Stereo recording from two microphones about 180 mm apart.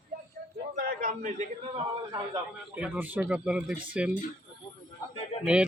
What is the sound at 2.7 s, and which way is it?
Speech, 10° right (ahead or behind).